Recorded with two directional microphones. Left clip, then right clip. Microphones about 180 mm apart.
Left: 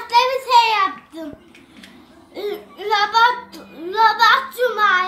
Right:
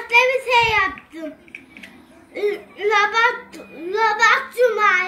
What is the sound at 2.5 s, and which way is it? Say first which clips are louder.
A child's voice: right 1 dB; 20° left (ahead or behind).